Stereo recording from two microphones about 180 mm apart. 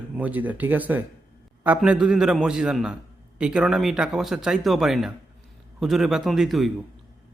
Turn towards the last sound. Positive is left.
turn(degrees=0)  # may be behind; listen again after turning